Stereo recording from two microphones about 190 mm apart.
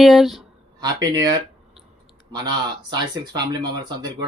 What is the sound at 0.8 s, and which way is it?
Speech, 20° right (ahead or behind).